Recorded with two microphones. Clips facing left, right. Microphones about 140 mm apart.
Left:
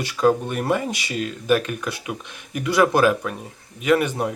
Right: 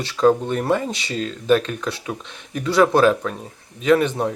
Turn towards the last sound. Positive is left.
turn(degrees=10)  # may be behind; listen again after turning